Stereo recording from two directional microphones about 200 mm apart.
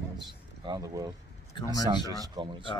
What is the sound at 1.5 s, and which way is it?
Speech, 20° left (ahead or behind).